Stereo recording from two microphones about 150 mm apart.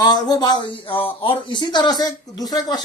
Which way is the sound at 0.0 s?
25° left (ahead or behind).